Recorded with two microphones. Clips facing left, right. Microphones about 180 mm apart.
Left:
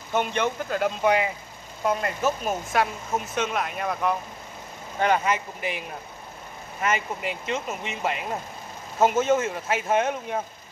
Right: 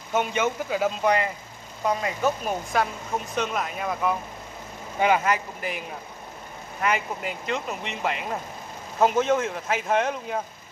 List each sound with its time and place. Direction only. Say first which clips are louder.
0.1 s speech: even; 5° right (ahead or behind)